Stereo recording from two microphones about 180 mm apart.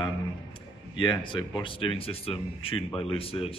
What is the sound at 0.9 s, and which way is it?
Speech, 25° left (ahead or behind).